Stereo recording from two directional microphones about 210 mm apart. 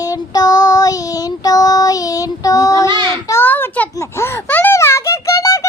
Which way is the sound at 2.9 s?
10° left (ahead or behind).